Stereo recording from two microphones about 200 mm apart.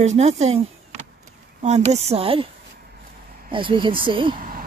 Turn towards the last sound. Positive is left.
turn(degrees=-25)  # may be behind; listen again after turning